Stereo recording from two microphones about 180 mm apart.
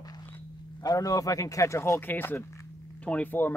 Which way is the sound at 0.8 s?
20° left (ahead or behind).